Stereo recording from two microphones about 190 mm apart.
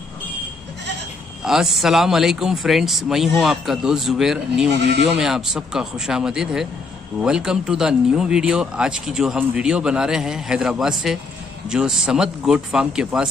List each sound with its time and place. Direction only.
1.4 s speech: 5° right (ahead or behind)
4.7 s speech: 65° right (ahead or behind)
5.2 s speech: centre (ahead or behind)